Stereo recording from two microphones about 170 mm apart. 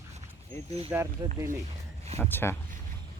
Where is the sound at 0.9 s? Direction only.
15° right (ahead or behind).